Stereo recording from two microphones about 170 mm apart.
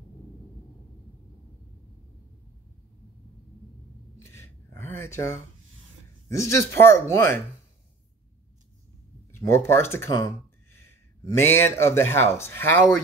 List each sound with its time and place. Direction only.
4.2 s a sound: 15° left (ahead or behind)
6.2 s speech: 15° left (ahead or behind)
9.3 s speech: 15° left (ahead or behind)